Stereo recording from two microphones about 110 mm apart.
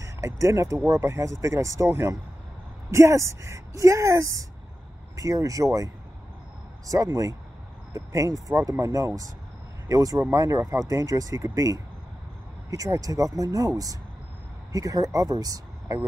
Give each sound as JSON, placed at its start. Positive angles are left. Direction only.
{"t": 0.0, "sound": "a woman's voice", "side_deg": -30}
{"t": 6.9, "sound": "a woman's voice", "side_deg": -30}